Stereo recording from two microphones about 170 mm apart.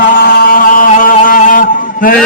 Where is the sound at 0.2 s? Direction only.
60° left (ahead or behind).